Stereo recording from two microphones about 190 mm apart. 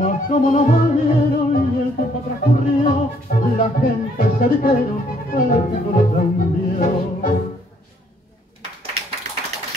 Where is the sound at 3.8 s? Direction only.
45° left (ahead or behind).